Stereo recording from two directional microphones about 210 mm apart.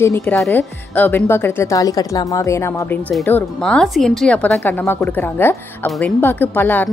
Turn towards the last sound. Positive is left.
turn(degrees=10)  # may be behind; listen again after turning